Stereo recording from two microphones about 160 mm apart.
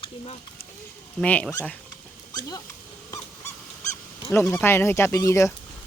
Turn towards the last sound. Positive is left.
turn(degrees=15)  # may be behind; listen again after turning